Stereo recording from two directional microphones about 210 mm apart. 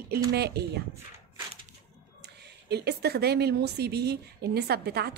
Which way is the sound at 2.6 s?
50° right (ahead or behind).